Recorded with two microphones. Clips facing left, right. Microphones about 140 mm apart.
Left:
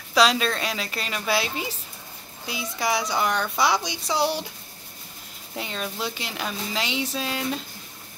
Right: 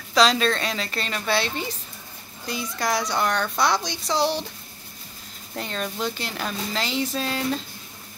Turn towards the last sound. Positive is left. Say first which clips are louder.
# right 2 dB
turn(degrees=5)  # may be behind; listen again after turning